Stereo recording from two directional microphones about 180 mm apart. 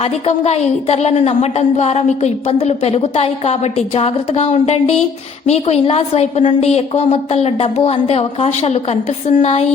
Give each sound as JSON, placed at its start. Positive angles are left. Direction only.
{"t": 0.0, "sound": "a woman's voice", "side_deg": 35}